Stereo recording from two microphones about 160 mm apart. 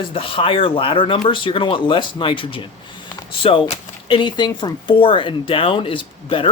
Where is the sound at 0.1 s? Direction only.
35° left (ahead or behind).